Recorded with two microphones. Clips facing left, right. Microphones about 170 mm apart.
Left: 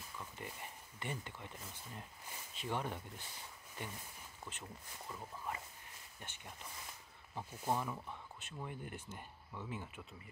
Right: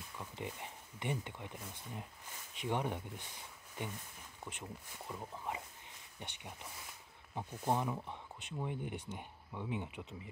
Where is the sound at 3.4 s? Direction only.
15° right (ahead or behind).